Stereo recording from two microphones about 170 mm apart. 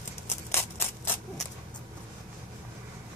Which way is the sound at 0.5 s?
15° left (ahead or behind).